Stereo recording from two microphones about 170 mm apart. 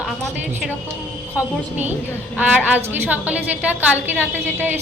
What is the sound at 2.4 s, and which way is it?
A woman's voice, 10° right (ahead or behind).